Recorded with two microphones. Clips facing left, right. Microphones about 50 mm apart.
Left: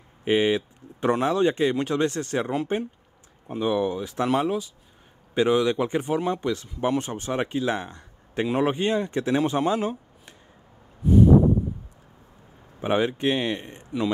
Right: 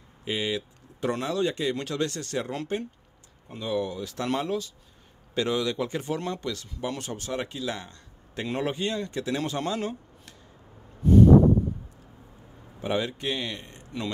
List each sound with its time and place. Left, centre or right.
0.2 s speech: left; by 11.2 s centre
12.8 s speech: left